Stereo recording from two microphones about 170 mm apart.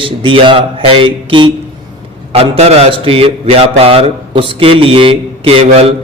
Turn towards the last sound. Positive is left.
turn(degrees=-35)  # may be behind; listen again after turning